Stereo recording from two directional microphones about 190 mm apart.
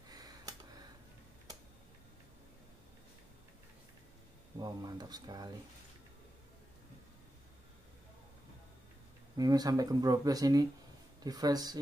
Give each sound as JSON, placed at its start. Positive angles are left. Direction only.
{"t": 0.1, "sound": "a sound", "side_deg": -20}
{"t": 4.6, "sound": "speech", "side_deg": -20}
{"t": 9.4, "sound": "speech", "side_deg": -20}